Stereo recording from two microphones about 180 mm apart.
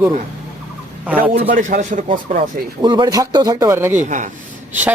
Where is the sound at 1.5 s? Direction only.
45° right (ahead or behind).